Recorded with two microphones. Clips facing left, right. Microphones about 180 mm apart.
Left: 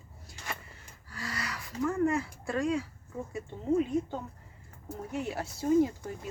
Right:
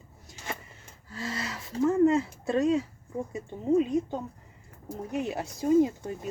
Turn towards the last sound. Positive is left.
turn(degrees=-20)  # may be behind; listen again after turning